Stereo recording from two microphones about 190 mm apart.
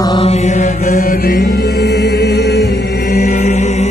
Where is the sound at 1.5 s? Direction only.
55° left (ahead or behind).